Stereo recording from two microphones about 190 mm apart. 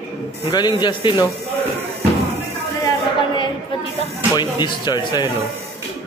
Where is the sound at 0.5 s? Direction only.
25° left (ahead or behind).